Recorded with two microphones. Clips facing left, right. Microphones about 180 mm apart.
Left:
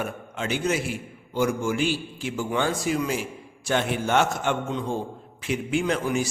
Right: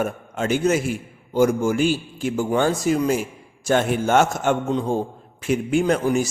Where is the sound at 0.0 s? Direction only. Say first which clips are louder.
Right 6 dB; 45° right (ahead or behind).